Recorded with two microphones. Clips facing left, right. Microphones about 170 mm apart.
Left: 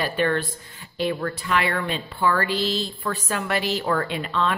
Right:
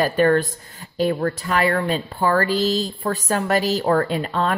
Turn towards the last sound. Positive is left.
turn(degrees=-40)  # may be behind; listen again after turning